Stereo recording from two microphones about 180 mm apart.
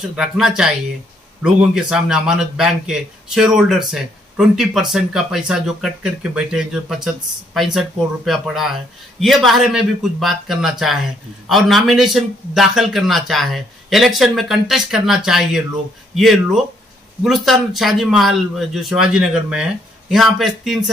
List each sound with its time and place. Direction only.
0.0 s speech: 5° right (ahead or behind)